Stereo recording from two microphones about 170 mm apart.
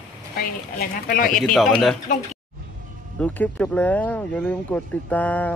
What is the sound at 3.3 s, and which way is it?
Speech, 10° left (ahead or behind).